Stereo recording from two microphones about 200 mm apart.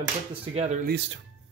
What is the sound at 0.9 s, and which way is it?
Speech, 60° right (ahead or behind).